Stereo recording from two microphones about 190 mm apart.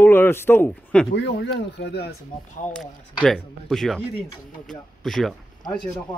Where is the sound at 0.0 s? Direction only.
10° left (ahead or behind).